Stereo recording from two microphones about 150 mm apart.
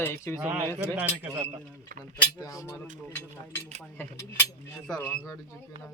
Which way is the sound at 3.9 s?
15° left (ahead or behind).